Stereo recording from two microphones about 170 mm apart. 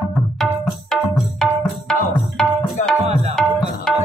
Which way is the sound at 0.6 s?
Centre (ahead or behind).